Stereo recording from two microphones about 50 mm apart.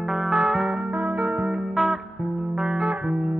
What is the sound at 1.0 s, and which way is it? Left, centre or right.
Music, right.